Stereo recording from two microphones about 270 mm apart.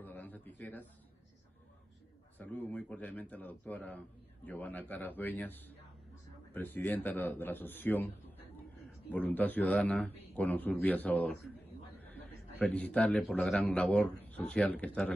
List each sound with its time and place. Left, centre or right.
0.0 s a sound: centre
2.3 s a man's voice: centre
9.1 s a man's voice: centre